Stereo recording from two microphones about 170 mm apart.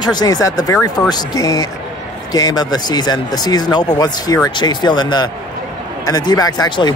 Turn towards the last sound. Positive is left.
turn(degrees=25)  # may be behind; listen again after turning